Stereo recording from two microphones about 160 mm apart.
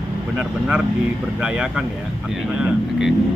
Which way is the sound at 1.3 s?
5° right (ahead or behind).